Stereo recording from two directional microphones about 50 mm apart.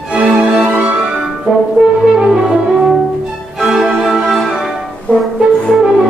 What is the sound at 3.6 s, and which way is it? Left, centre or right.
Music, centre.